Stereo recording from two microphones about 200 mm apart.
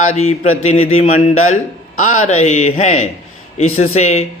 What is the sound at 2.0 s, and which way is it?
Speech, 40° left (ahead or behind).